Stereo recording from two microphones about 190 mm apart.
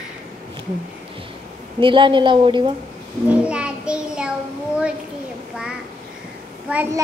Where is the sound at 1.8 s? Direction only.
25° right (ahead or behind).